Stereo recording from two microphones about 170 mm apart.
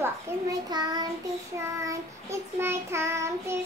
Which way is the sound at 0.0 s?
20° right (ahead or behind).